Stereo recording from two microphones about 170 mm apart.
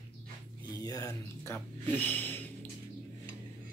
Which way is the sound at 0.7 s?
20° left (ahead or behind).